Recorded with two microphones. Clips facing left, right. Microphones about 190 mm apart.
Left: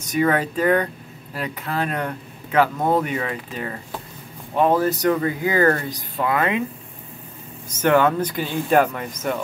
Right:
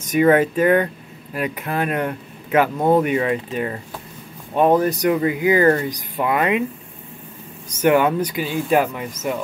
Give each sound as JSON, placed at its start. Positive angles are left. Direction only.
{"t": 0.2, "sound": "speech", "side_deg": -20}
{"t": 7.7, "sound": "speech", "side_deg": -15}